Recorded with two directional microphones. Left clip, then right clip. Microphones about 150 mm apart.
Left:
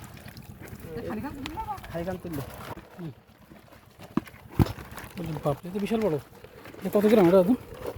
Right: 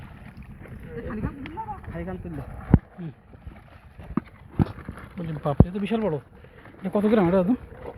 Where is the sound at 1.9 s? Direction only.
65° left (ahead or behind).